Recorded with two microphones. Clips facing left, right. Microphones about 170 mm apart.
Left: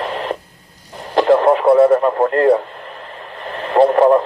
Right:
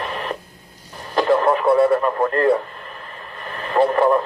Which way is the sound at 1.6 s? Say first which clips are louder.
Left 5 dB; 45° left (ahead or behind).